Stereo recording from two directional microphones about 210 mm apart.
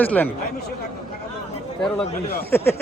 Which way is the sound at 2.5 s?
10° left (ahead or behind).